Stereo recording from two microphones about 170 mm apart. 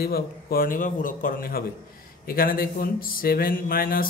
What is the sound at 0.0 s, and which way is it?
Speech, 60° left (ahead or behind).